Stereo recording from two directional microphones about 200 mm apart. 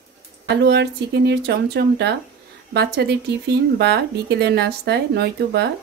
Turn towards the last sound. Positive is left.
turn(degrees=-55)  # may be behind; listen again after turning